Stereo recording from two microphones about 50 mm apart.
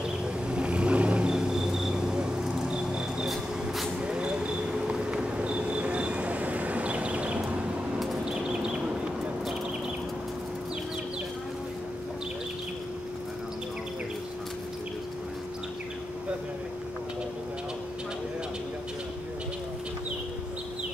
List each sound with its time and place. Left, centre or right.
0.5 s vehicle: right
3.3 s vehicle: centre
4.0 s vehicle: centre
8.3 s a sound: centre